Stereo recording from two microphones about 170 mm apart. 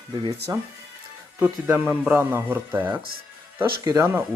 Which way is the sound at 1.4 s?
10° right (ahead or behind).